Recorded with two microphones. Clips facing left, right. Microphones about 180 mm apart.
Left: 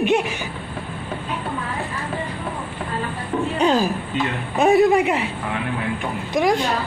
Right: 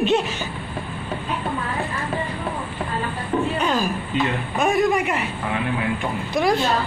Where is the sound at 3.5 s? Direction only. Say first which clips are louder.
Left 4 dB; 35° left (ahead or behind).